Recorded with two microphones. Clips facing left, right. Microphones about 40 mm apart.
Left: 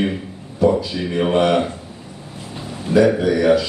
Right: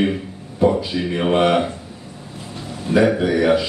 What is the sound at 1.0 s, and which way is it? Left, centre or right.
Speech, centre.